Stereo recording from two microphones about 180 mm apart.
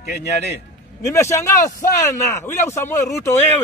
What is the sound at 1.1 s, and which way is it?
A man's voice, 15° left (ahead or behind).